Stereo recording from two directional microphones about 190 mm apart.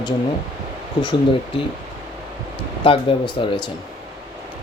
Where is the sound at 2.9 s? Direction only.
25° left (ahead or behind).